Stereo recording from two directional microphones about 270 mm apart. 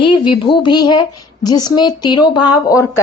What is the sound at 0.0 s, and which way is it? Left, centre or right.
A woman's voice, centre.